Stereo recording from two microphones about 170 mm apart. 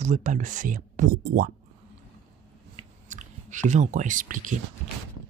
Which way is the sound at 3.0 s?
45° right (ahead or behind).